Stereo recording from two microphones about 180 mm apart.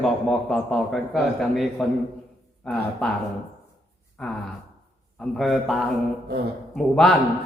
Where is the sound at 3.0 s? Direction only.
5° left (ahead or behind).